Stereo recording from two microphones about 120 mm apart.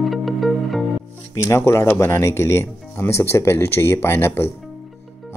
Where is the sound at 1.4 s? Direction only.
20° left (ahead or behind).